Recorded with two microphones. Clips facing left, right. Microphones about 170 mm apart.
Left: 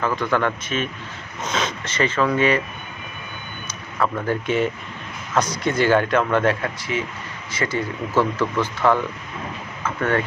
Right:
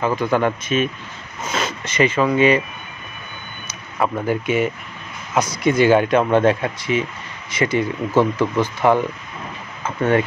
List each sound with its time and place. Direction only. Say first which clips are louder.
0.0 s speech: right 3 dB; 10° right (ahead or behind)
3.6 s speech: right 2 dB; 15° right (ahead or behind)